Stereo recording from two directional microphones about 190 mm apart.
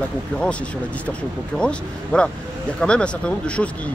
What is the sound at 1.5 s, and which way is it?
Speech, 5° left (ahead or behind).